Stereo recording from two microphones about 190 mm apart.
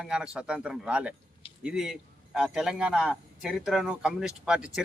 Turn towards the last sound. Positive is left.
turn(degrees=-5)  # may be behind; listen again after turning